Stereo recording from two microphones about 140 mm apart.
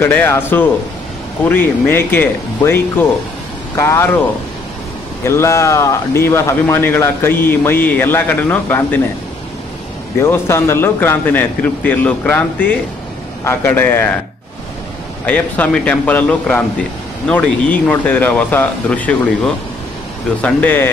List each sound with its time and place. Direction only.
0.0 s speech: 15° left (ahead or behind)
5.2 s speech: 20° left (ahead or behind)
10.2 s speech: 20° left (ahead or behind)
15.2 s speech: 10° left (ahead or behind)